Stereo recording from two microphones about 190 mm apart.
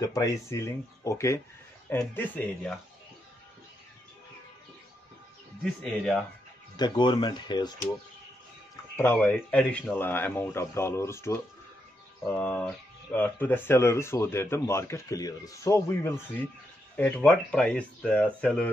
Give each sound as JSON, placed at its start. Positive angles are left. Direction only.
{"t": 0.0, "sound": "speech", "side_deg": 15}
{"t": 5.6, "sound": "speech", "side_deg": 5}
{"t": 6.8, "sound": "speech", "side_deg": 25}
{"t": 8.9, "sound": "speech", "side_deg": 10}